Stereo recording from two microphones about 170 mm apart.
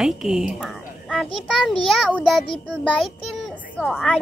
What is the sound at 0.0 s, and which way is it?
A woman's voice, 5° right (ahead or behind).